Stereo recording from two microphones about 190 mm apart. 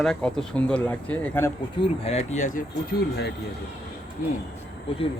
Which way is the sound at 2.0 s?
35° left (ahead or behind).